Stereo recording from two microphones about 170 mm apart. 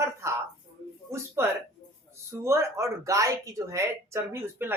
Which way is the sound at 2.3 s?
15° right (ahead or behind).